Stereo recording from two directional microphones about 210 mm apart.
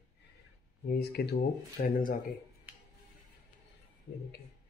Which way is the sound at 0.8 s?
50° left (ahead or behind).